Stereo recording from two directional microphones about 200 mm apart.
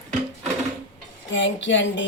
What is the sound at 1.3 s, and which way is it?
Speech, 65° left (ahead or behind).